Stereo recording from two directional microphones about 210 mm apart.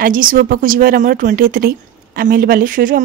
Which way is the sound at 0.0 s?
40° right (ahead or behind).